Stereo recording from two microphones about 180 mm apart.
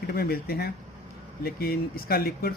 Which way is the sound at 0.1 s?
60° left (ahead or behind).